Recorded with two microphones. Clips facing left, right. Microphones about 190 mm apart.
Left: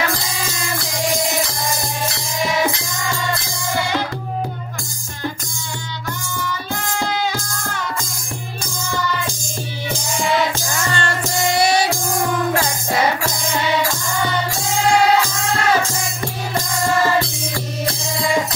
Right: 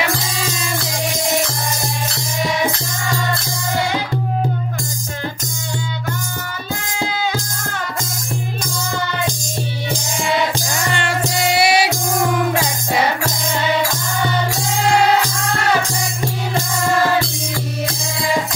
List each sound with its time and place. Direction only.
10.8 s music: 15° right (ahead or behind)
12.2 s music: 20° right (ahead or behind)